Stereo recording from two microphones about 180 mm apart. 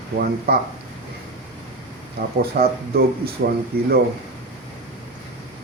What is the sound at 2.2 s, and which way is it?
Speech, 60° right (ahead or behind).